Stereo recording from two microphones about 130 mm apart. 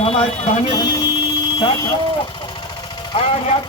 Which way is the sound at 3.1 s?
50° left (ahead or behind).